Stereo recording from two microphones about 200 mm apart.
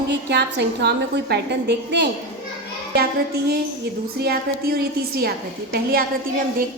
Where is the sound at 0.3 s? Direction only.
60° right (ahead or behind).